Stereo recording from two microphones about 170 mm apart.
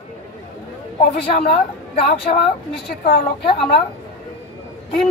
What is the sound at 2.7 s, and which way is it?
Speech, 70° left (ahead or behind).